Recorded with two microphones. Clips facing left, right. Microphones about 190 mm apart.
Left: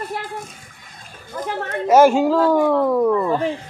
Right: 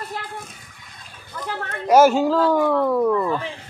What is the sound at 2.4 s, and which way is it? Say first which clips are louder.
Dog: left 2 dB; 15° left (ahead or behind).